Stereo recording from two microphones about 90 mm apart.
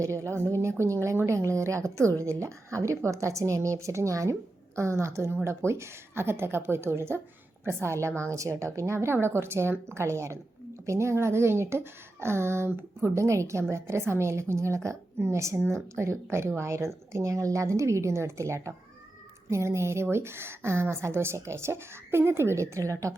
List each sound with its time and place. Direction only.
0.0 s a woman's voice: 35° right (ahead or behind)